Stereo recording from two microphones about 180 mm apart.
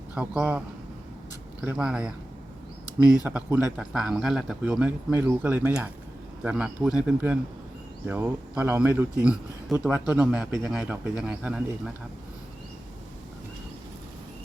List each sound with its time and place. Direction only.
0.1 s speech: 10° right (ahead or behind)
1.6 s speech: 5° right (ahead or behind)
2.8 s speech: 20° left (ahead or behind)
3.2 s speech: 10° right (ahead or behind)